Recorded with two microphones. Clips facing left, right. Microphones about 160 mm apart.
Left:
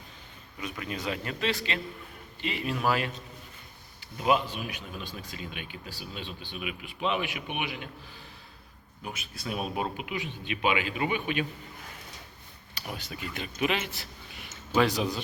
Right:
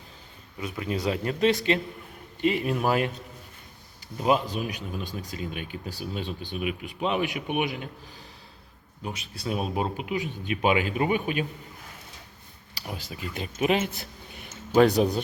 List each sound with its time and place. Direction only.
0.6 s speech: 30° right (ahead or behind)
2.4 s speech: 50° right (ahead or behind)
4.2 s speech: 35° right (ahead or behind)
9.0 s speech: 30° right (ahead or behind)
12.9 s speech: 30° right (ahead or behind); by 15.2 s 55° right (ahead or behind)